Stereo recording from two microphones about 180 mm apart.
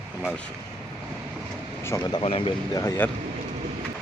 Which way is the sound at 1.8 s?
15° left (ahead or behind).